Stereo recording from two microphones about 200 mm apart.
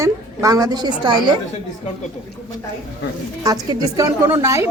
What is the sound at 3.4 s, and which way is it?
Speech, 20° right (ahead or behind).